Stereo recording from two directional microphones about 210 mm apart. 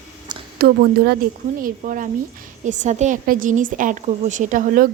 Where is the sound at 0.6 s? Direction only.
50° right (ahead or behind).